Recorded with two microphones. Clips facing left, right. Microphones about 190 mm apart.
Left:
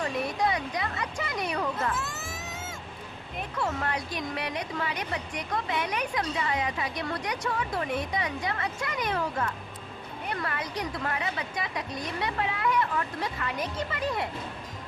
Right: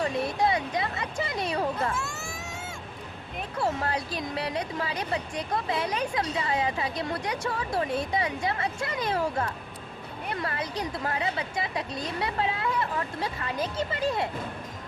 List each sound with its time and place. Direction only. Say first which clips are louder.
0.0 s speech: right 2 dB; 25° right (ahead or behind)
2.0 s baby cry: right 1 dB; centre (ahead or behind)
3.6 s speech: right 3 dB; 30° right (ahead or behind)